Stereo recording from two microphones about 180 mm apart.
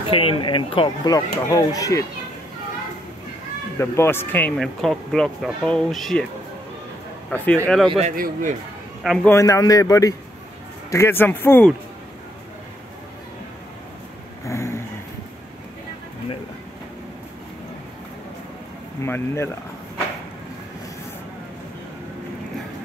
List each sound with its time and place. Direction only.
0.1 s speech: 30° left (ahead or behind)
3.7 s speech: 15° left (ahead or behind)
7.2 s a man's voice: 10° left (ahead or behind)
8.2 s speech: 45° right (ahead or behind)
9.0 s speech: centre (ahead or behind)
9.3 s a man's voice: 20° left (ahead or behind)
14.4 s vehicle: 15° left (ahead or behind)
19.0 s a man's voice: 15° left (ahead or behind)